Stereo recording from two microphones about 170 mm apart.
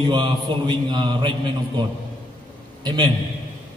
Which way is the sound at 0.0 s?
25° right (ahead or behind).